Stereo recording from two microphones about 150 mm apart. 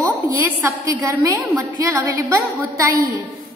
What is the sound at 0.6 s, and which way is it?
A woman's voice, 15° right (ahead or behind).